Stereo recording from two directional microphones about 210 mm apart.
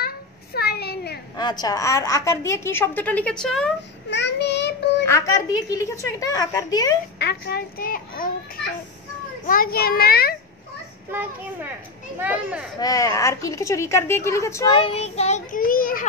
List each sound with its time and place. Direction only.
0.6 s a sound: 50° left (ahead or behind)
1.3 s a woman's voice: 20° left (ahead or behind); by 3.7 s 5° left (ahead or behind)
4.1 s child singing: 55° left (ahead or behind)
5.0 s a woman's voice: 15° left (ahead or behind)
7.2 s a child's voice: 50° left (ahead or behind)
9.5 s a child's voice: 45° left (ahead or behind)
11.1 s a child's voice: 10° right (ahead or behind)
12.7 s a woman's voice: 15° left (ahead or behind)
14.8 s a child's voice: 30° left (ahead or behind)